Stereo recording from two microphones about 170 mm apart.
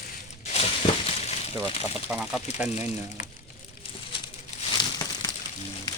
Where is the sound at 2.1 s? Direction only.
5° right (ahead or behind).